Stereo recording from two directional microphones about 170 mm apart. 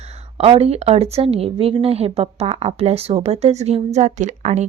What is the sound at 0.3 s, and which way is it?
Speech, 35° right (ahead or behind).